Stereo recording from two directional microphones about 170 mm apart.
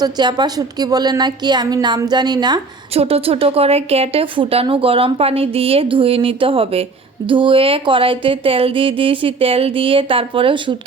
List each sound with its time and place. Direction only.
0.0 s a woman's voice: 25° right (ahead or behind)
2.9 s a woman's voice: 35° right (ahead or behind)